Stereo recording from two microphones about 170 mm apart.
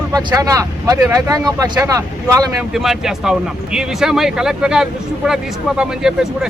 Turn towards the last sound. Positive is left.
turn(degrees=-5)  # may be behind; listen again after turning